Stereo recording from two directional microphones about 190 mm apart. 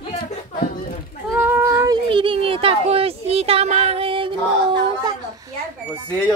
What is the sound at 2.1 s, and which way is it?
Speech, 25° right (ahead or behind).